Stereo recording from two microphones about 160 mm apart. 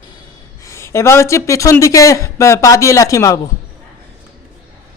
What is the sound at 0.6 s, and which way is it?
Speech, 20° left (ahead or behind).